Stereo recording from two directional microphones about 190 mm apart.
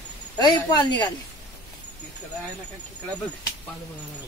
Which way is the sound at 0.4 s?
20° left (ahead or behind).